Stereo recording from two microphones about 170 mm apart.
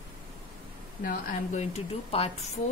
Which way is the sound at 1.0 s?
45° left (ahead or behind).